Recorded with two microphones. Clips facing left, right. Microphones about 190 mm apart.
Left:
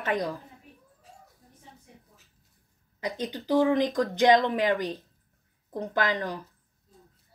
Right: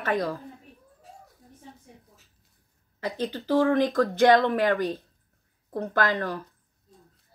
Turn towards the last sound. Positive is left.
turn(degrees=15)  # may be behind; listen again after turning